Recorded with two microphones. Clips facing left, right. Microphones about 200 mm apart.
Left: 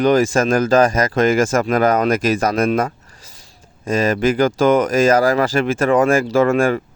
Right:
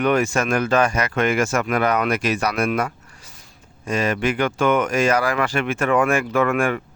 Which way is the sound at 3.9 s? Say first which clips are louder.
Left 5 dB; 40° left (ahead or behind).